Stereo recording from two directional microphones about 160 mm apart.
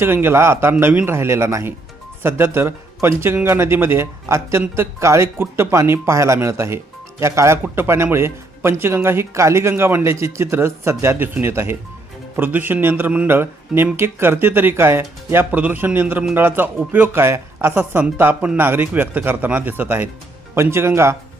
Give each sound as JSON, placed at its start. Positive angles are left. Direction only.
{"t": 0.0, "sound": "a man's voice", "side_deg": -15}